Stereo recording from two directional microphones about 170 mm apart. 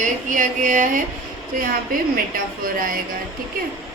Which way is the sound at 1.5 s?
55° right (ahead or behind).